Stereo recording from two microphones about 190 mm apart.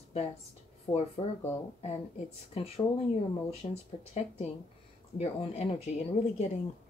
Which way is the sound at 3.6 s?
35° left (ahead or behind).